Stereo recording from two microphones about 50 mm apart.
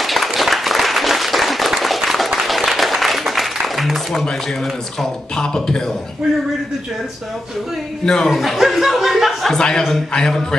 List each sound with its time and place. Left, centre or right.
0.0 s applause: centre
5.3 s a man's voice: centre
8.0 s a man's voice: centre
8.3 s speech: centre
9.5 s a man's voice: centre